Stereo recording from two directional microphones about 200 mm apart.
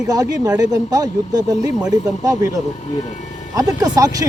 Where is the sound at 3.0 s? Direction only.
35° left (ahead or behind).